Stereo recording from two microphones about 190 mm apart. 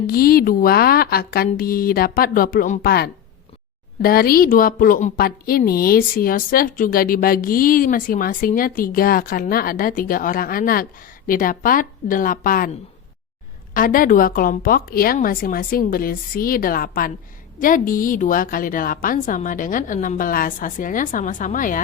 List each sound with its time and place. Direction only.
0.1 s a woman's voice: 50° left (ahead or behind)
13.7 s a woman's voice: 45° left (ahead or behind)